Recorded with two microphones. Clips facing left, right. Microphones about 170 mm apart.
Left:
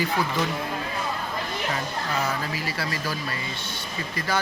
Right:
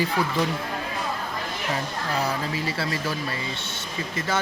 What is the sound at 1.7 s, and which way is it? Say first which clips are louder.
Speech: right 3 dB; 30° right (ahead or behind).